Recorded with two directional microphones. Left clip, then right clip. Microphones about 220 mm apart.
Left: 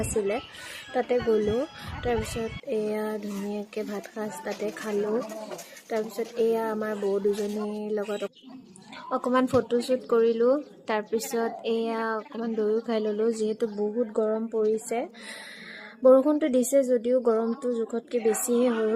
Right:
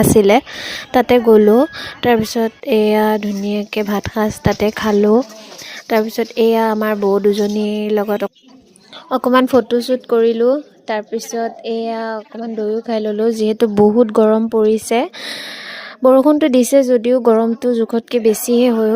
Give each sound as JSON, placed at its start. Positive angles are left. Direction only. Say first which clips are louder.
{"t": 0.3, "sound": "speech", "louder": "right 17 dB", "side_deg": -45}